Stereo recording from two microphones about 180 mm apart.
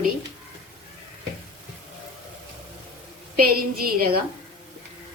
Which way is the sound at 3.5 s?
55° right (ahead or behind).